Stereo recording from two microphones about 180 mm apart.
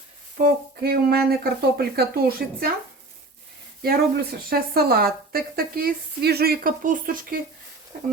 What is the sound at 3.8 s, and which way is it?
A woman's voice, 60° right (ahead or behind).